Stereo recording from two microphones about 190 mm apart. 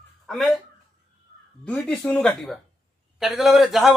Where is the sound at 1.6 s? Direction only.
5° left (ahead or behind).